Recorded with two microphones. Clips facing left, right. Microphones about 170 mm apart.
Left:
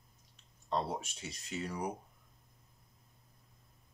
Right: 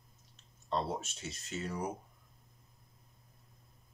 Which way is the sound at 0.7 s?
15° left (ahead or behind).